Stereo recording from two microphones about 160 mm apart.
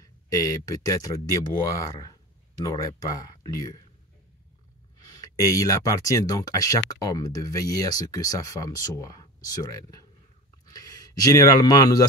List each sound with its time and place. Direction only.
0.0 s speech: 20° left (ahead or behind)
5.0 s speech: 20° left (ahead or behind)